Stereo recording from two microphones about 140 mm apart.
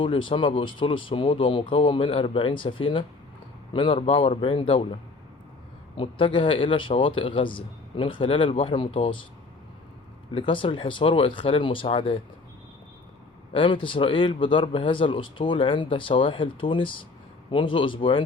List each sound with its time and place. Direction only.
0.0 s speech: 35° left (ahead or behind)
6.0 s speech: 40° left (ahead or behind)
10.3 s speech: 40° left (ahead or behind)
13.5 s speech: 40° left (ahead or behind)